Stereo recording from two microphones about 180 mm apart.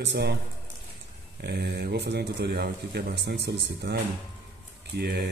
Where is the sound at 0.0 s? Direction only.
70° right (ahead or behind).